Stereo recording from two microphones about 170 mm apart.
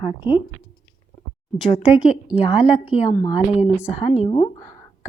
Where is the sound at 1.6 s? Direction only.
5° right (ahead or behind).